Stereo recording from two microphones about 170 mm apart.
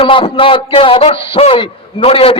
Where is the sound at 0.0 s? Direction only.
30° left (ahead or behind).